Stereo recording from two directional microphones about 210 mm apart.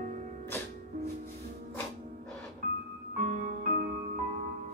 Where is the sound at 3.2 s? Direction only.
40° right (ahead or behind).